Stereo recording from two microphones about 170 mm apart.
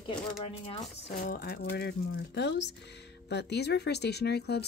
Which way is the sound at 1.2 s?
60° left (ahead or behind).